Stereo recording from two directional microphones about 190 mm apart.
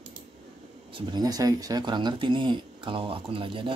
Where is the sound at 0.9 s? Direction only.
20° right (ahead or behind).